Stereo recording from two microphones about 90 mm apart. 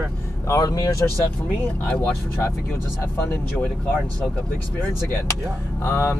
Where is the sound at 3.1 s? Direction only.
25° left (ahead or behind).